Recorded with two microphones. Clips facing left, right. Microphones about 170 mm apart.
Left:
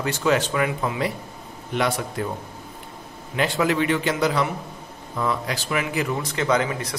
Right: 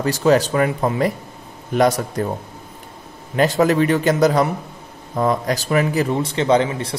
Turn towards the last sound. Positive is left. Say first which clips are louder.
# right 5 dB
turn(degrees=-30)  # may be behind; listen again after turning